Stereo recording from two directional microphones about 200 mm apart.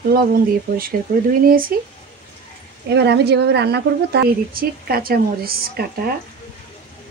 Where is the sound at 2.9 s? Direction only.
55° right (ahead or behind).